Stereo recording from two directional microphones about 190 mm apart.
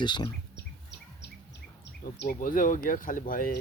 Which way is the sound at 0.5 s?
65° left (ahead or behind).